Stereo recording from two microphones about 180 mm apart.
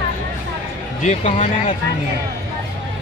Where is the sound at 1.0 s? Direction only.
40° left (ahead or behind).